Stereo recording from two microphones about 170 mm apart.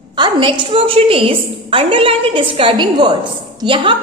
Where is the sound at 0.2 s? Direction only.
25° right (ahead or behind).